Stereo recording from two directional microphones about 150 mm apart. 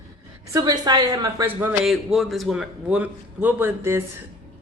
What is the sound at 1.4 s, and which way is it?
Speech, 10° right (ahead or behind).